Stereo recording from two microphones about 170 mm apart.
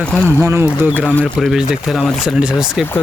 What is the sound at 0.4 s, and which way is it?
Speech, 15° right (ahead or behind).